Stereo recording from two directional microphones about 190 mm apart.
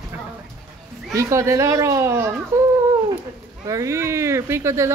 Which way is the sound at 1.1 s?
15° right (ahead or behind).